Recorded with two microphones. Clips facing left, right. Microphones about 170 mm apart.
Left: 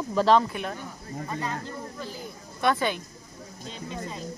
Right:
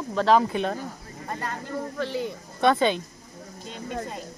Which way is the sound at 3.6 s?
50° right (ahead or behind).